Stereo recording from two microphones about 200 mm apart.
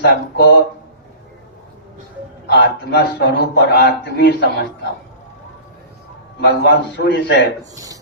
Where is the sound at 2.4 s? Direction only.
55° left (ahead or behind).